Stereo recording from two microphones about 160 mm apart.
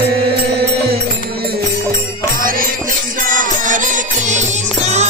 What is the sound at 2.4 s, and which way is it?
Music, 60° right (ahead or behind).